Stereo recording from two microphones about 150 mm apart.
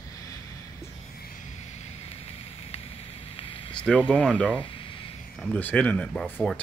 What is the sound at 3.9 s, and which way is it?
Speech, 5° left (ahead or behind).